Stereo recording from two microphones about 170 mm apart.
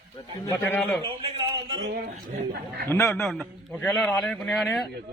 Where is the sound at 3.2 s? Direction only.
Centre (ahead or behind).